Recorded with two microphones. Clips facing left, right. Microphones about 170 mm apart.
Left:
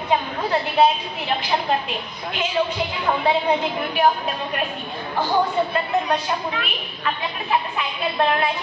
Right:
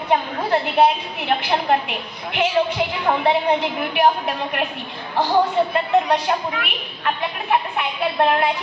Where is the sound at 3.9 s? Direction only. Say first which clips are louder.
Right 2 dB; 70° right (ahead or behind).